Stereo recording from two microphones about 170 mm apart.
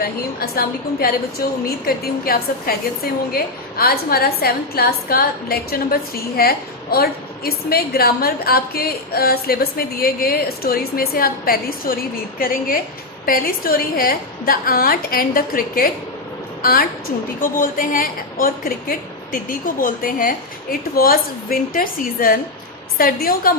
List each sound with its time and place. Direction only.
0.0 s a woman's voice: 65° left (ahead or behind)
17.4 s a woman's voice: 55° left (ahead or behind)